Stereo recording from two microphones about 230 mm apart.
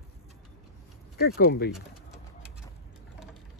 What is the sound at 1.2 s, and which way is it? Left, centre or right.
Speech, left.